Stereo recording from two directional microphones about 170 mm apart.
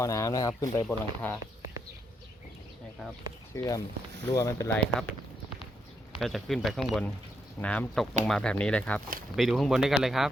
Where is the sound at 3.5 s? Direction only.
20° left (ahead or behind).